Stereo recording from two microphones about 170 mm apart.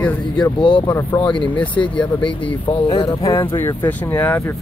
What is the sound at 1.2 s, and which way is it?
Speech, 30° left (ahead or behind).